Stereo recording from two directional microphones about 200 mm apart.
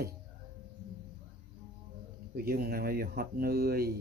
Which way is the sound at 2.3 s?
50° right (ahead or behind).